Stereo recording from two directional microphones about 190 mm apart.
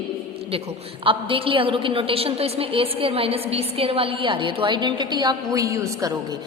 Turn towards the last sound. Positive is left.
turn(degrees=-15)  # may be behind; listen again after turning